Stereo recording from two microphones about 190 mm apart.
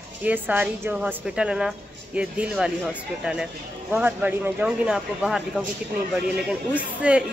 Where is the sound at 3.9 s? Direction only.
10° right (ahead or behind).